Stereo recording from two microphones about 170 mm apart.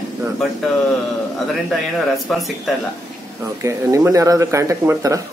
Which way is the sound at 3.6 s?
20° right (ahead or behind).